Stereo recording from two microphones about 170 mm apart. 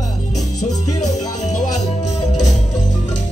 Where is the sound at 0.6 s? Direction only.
45° left (ahead or behind).